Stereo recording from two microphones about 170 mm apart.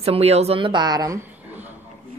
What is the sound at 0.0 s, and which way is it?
A woman's voice, 35° right (ahead or behind).